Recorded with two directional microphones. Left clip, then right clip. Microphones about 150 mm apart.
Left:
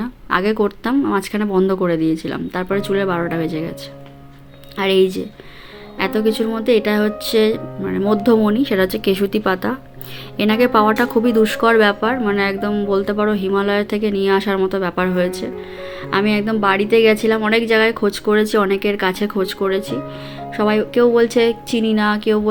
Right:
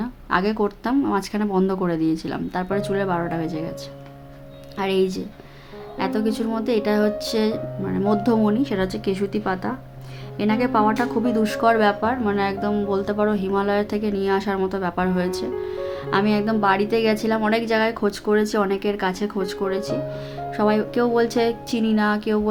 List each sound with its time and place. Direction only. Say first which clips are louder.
0.0 s speech: left 4 dB; 10° left (ahead or behind)
4.8 s speech: left 6 dB; 10° left (ahead or behind)